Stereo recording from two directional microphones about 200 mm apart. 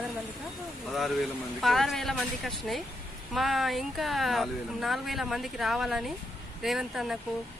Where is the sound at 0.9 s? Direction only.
Centre (ahead or behind).